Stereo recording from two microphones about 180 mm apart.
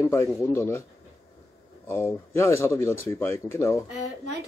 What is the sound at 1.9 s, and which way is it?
Speech, 15° left (ahead or behind).